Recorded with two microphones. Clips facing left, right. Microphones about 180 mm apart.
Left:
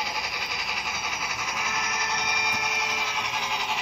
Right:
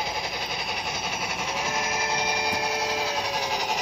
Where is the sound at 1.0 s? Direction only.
30° right (ahead or behind).